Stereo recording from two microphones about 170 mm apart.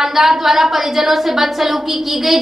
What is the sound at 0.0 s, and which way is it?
A woman's voice, centre (ahead or behind).